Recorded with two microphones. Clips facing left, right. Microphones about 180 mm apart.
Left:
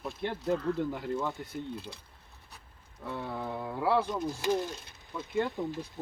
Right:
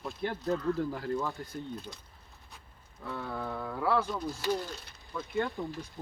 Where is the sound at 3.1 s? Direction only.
25° left (ahead or behind).